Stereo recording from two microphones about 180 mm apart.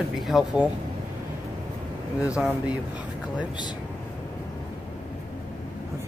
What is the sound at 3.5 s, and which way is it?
Speech, 25° left (ahead or behind).